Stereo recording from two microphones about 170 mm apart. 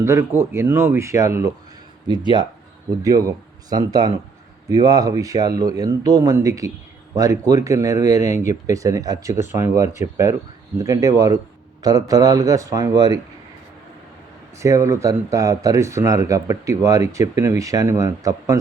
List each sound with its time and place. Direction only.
0.0 s speech: 15° right (ahead or behind)
14.6 s speech: 20° right (ahead or behind)